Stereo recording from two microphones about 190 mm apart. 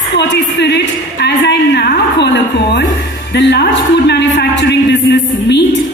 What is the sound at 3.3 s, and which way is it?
A man's voice, 60° left (ahead or behind).